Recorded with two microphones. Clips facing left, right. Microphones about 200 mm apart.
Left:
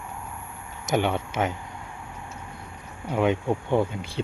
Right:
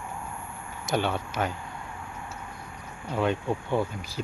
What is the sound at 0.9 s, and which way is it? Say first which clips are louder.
Speech: left 3 dB; 20° left (ahead or behind).